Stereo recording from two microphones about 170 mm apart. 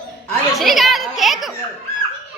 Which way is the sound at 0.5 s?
Centre (ahead or behind).